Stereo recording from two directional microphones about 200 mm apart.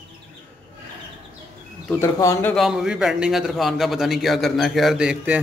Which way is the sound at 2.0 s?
15° left (ahead or behind).